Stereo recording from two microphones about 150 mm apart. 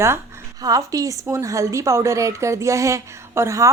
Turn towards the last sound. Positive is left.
turn(degrees=-20)  # may be behind; listen again after turning